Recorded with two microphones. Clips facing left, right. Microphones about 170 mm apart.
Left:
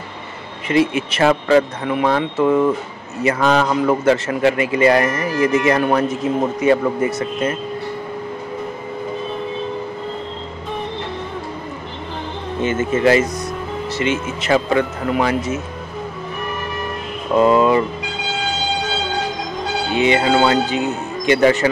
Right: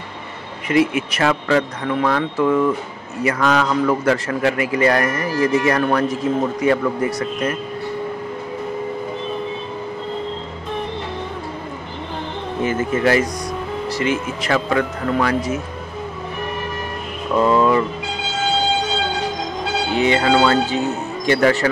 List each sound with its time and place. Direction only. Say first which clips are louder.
0.7 s a man's voice: even; 25° left (ahead or behind)
12.6 s a man's voice: left 2 dB; 25° left (ahead or behind)
17.4 s a man's voice: left 2 dB; 20° left (ahead or behind)
19.9 s a man's voice: left 1 dB; 20° left (ahead or behind)